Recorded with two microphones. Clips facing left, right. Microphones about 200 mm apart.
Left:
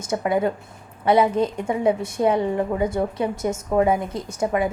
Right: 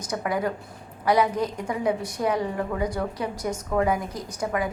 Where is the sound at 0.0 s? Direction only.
25° left (ahead or behind).